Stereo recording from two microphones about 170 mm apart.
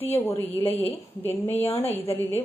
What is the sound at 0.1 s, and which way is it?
A woman's voice, 15° left (ahead or behind).